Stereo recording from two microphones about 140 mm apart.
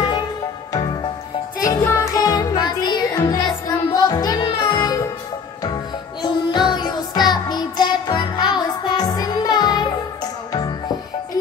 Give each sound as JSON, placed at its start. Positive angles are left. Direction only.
{"t": 1.8, "sound": "music", "side_deg": 20}
{"t": 6.2, "sound": "music", "side_deg": 30}